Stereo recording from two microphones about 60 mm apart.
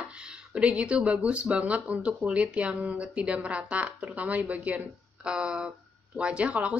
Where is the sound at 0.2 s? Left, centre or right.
Centre.